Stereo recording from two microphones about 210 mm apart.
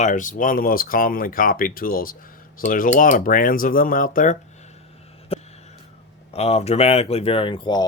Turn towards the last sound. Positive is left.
turn(degrees=20)  # may be behind; listen again after turning